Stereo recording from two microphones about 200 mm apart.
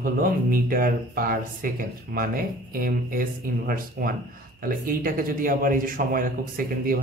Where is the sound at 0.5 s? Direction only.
45° right (ahead or behind).